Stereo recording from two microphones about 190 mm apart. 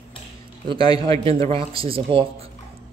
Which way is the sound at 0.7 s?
25° right (ahead or behind).